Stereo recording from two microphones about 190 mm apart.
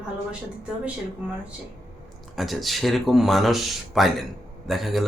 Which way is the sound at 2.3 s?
Centre (ahead or behind).